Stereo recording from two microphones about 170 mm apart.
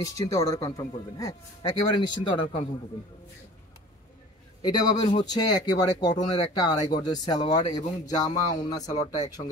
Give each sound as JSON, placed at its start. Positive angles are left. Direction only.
{"t": 0.0, "sound": "a man's voice", "side_deg": 20}
{"t": 4.6, "sound": "a man's voice", "side_deg": 25}
{"t": 8.8, "sound": "speech", "side_deg": 45}